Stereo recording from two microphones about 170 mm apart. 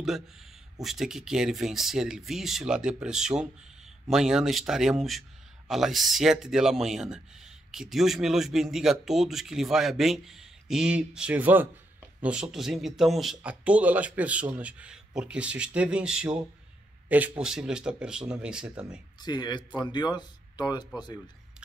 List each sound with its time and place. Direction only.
0.8 s speech: centre (ahead or behind)
17.4 s speech: 5° right (ahead or behind)
19.1 s speech: 25° left (ahead or behind)